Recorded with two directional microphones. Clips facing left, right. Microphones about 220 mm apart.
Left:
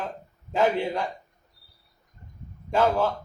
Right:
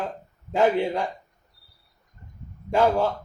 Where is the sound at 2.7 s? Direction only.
15° right (ahead or behind).